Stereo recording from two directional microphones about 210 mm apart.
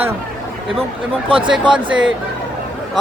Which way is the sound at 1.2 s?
25° right (ahead or behind).